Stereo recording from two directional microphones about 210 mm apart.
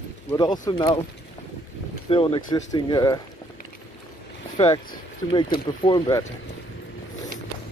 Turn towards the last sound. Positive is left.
turn(degrees=20)  # may be behind; listen again after turning